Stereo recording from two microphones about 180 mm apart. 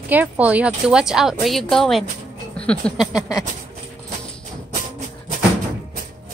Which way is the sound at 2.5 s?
5° left (ahead or behind).